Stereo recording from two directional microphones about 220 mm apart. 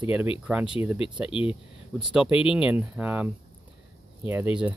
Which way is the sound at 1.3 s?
25° left (ahead or behind).